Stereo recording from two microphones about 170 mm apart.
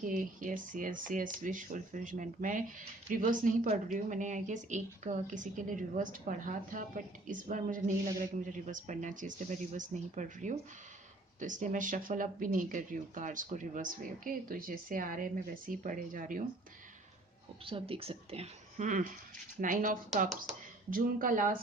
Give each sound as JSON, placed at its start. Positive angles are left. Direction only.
{"t": 0.0, "sound": "speech", "side_deg": -50}
{"t": 17.7, "sound": "a woman's voice", "side_deg": -30}